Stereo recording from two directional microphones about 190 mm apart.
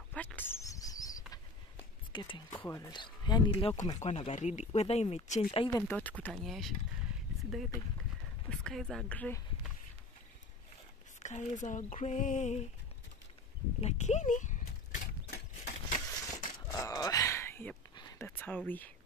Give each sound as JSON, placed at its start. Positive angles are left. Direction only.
{"t": 0.1, "sound": "a sound", "side_deg": 5}
{"t": 2.1, "sound": "speech", "side_deg": 25}
{"t": 5.8, "sound": "speech", "side_deg": 10}
{"t": 11.2, "sound": "speech", "side_deg": 40}
{"t": 13.7, "sound": "mechanisms", "side_deg": 35}
{"t": 16.7, "sound": "groan", "side_deg": 20}
{"t": 17.9, "sound": "a sound", "side_deg": 20}
{"t": 18.4, "sound": "speech", "side_deg": 10}